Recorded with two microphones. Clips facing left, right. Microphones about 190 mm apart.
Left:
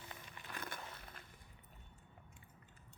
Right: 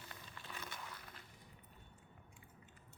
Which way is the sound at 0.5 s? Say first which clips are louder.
Left 4 dB; 55° left (ahead or behind).